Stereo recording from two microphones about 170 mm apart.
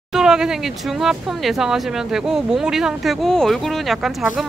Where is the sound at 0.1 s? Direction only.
5° right (ahead or behind).